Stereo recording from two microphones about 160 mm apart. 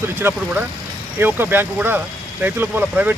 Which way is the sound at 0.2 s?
15° right (ahead or behind).